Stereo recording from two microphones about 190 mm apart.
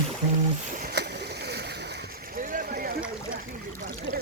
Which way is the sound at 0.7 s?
45° right (ahead or behind).